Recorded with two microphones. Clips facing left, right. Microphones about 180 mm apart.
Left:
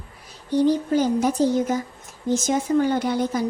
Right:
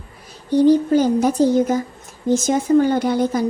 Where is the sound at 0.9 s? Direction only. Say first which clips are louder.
Right 4 dB; 40° right (ahead or behind).